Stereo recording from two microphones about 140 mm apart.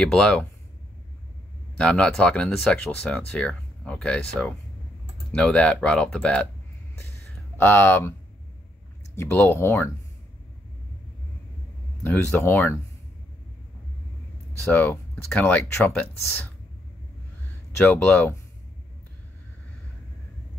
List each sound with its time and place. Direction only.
0.0 s speech: 5° left (ahead or behind)
1.8 s speech: 5° left (ahead or behind)
7.5 s speech: 15° left (ahead or behind)
9.1 s speech: 15° left (ahead or behind)
12.0 s speech: 15° left (ahead or behind)
14.6 s speech: 15° left (ahead or behind)
17.8 s speech: 10° left (ahead or behind)